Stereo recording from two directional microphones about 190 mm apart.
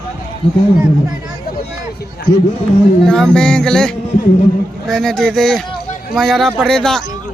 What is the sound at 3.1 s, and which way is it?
Speech, 5° left (ahead or behind).